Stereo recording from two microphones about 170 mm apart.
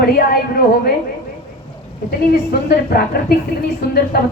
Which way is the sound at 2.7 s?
65° left (ahead or behind).